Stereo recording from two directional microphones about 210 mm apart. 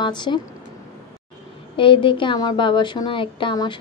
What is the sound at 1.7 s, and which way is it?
A woman's voice, 25° left (ahead or behind).